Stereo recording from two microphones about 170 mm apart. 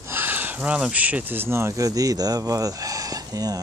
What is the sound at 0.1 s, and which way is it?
Speech, 10° right (ahead or behind).